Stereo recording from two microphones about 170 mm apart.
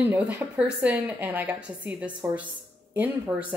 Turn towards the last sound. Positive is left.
turn(degrees=-10)  # may be behind; listen again after turning